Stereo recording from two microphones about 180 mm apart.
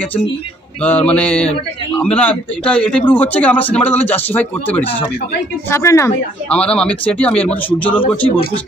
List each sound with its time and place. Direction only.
0.8 s a man's voice: 5° left (ahead or behind)
6.5 s speech: 5° left (ahead or behind)